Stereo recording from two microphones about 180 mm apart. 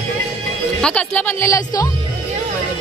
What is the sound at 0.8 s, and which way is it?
A woman's voice, 5° left (ahead or behind).